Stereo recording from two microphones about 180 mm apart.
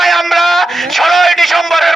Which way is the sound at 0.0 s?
Centre (ahead or behind).